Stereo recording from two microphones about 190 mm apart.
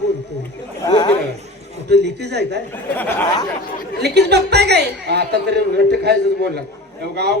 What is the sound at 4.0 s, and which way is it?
A woman's voice, 60° right (ahead or behind).